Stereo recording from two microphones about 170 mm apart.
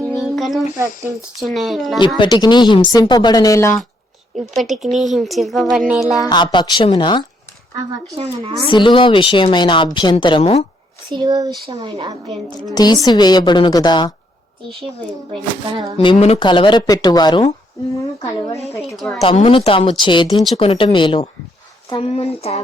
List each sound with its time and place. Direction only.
0.0 s music: 5° left (ahead or behind)
1.4 s a woman's voice: centre (ahead or behind)
2.1 s a woman's voice: 25° left (ahead or behind)
4.5 s a woman's voice: centre (ahead or behind)
6.2 s a woman's voice: 25° left (ahead or behind)
8.1 s speech: 35° right (ahead or behind)
8.6 s a woman's voice: 30° left (ahead or behind)
11.1 s speech: 25° right (ahead or behind)
12.7 s a woman's voice: 25° left (ahead or behind)
16.1 s a woman's voice: 40° left (ahead or behind); by 18.5 s 20° left (ahead or behind)
18.9 s a woman's voice: centre (ahead or behind)
19.2 s speech: 35° left (ahead or behind)